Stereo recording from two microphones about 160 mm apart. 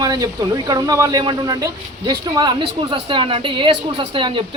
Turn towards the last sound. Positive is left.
turn(degrees=-30)  # may be behind; listen again after turning